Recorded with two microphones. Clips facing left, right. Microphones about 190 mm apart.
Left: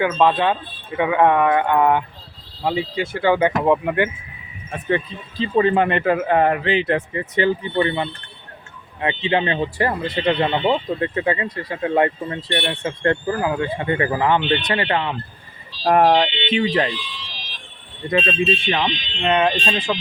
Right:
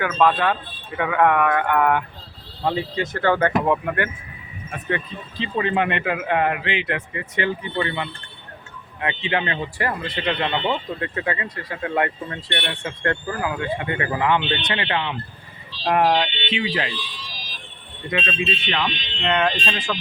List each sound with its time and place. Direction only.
0.0 s speech: 20° left (ahead or behind)
2.6 s speech: 10° left (ahead or behind)
5.4 s speech: 35° left (ahead or behind)
18.1 s speech: 40° left (ahead or behind); by 20.0 s 20° left (ahead or behind)